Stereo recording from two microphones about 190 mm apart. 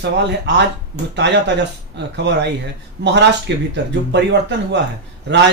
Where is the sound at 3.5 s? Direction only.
70° right (ahead or behind).